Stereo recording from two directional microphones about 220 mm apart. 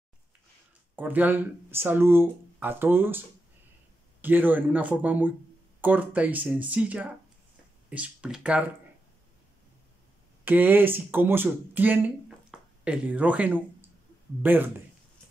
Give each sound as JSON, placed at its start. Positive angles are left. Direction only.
{"t": 0.9, "sound": "speech", "side_deg": -10}
{"t": 10.4, "sound": "speech", "side_deg": -10}
{"t": 12.4, "sound": "a sound", "side_deg": -5}
{"t": 14.4, "sound": "speech", "side_deg": -10}